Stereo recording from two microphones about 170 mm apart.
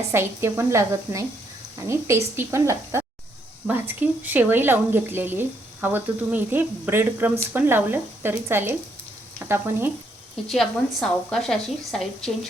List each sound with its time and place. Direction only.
0.1 s speech: 15° right (ahead or behind)
10.5 s a woman's voice: 5° left (ahead or behind)